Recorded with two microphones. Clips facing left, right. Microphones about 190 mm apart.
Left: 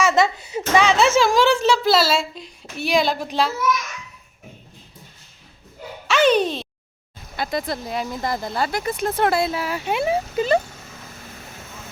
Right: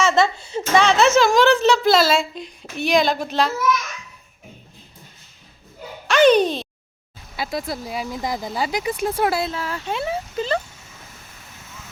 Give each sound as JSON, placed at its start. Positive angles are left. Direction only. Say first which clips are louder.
{"t": 0.0, "sound": "a sound", "louder": "even", "side_deg": 15}
{"t": 0.4, "sound": "speech", "louder": "even", "side_deg": 5}
{"t": 6.1, "sound": "a child's voice", "louder": "right 3 dB", "side_deg": 5}
{"t": 9.5, "sound": "speech", "louder": "left 3 dB", "side_deg": 10}